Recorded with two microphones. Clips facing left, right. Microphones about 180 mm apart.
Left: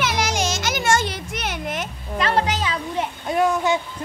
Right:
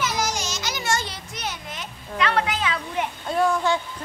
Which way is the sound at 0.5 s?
50° left (ahead or behind).